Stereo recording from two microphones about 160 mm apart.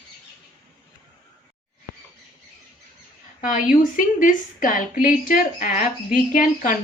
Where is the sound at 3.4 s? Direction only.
55° left (ahead or behind).